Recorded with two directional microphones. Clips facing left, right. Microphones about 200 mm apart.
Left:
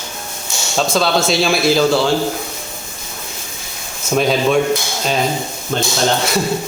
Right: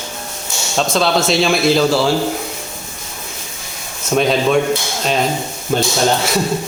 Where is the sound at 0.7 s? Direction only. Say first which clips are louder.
Even; centre (ahead or behind).